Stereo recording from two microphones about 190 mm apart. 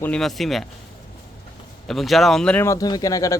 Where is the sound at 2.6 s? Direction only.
20° left (ahead or behind).